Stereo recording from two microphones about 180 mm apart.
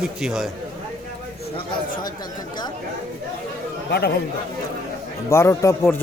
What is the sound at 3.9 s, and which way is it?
Speech, 65° left (ahead or behind).